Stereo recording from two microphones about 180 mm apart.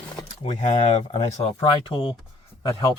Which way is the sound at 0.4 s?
30° left (ahead or behind).